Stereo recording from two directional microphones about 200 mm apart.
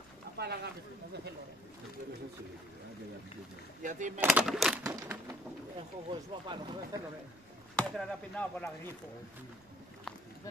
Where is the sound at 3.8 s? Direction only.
40° right (ahead or behind).